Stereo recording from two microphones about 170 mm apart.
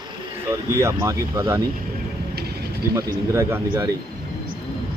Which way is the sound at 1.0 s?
15° right (ahead or behind).